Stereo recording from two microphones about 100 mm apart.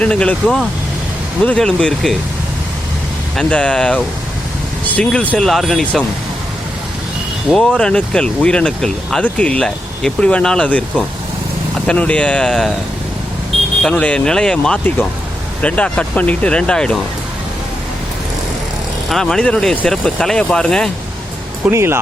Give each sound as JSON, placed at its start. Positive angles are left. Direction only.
{"t": 0.0, "sound": "speech", "side_deg": 10}
{"t": 3.3, "sound": "speech", "side_deg": 10}
{"t": 5.4, "sound": "speech", "side_deg": 0}
{"t": 7.5, "sound": "speech", "side_deg": 5}
{"t": 13.8, "sound": "speech", "side_deg": 10}
{"t": 19.0, "sound": "speech", "side_deg": 5}
{"t": 21.7, "sound": "speech", "side_deg": -25}